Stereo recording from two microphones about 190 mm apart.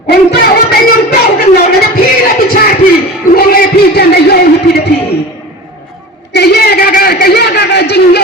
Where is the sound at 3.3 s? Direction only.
50° left (ahead or behind).